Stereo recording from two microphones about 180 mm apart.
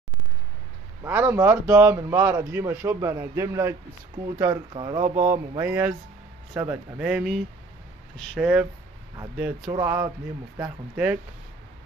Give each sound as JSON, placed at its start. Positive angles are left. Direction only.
{"t": 1.0, "sound": "speech", "side_deg": -10}
{"t": 4.7, "sound": "speech", "side_deg": -25}
{"t": 5.0, "sound": "speech", "side_deg": -45}
{"t": 5.6, "sound": "speech", "side_deg": -10}
{"t": 9.7, "sound": "speech", "side_deg": -20}